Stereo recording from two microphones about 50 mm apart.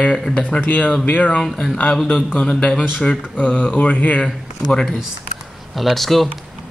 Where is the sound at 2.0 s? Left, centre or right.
Left.